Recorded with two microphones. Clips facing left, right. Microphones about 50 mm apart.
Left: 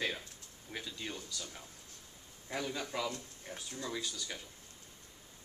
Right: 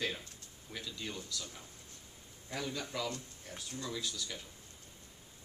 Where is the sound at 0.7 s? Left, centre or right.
Left.